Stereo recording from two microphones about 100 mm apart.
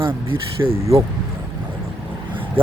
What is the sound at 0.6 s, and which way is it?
Speech, 25° right (ahead or behind).